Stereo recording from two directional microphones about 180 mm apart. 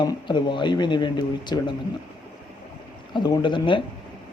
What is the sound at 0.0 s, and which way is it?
Speech, 25° left (ahead or behind).